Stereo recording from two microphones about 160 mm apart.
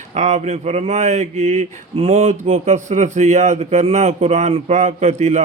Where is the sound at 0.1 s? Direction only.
45° right (ahead or behind).